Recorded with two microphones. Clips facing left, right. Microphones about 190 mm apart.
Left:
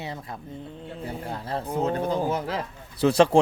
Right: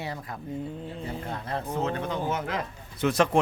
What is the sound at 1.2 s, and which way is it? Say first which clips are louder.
Speech: left 3 dB; 30° left (ahead or behind).